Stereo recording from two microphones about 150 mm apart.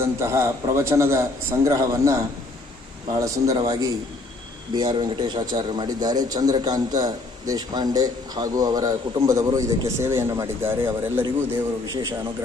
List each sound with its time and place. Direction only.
0.0 s a man's voice: 20° right (ahead or behind)